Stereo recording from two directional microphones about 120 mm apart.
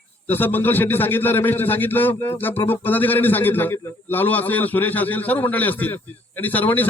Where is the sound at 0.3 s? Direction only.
15° left (ahead or behind).